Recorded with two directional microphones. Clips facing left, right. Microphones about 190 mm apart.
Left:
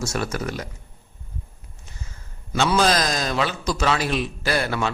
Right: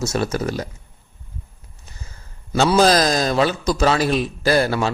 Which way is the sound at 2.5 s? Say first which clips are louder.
Right 5 dB; 35° right (ahead or behind).